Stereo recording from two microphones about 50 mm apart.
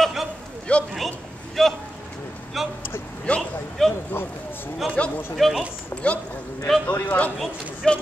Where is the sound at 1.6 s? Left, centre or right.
Centre.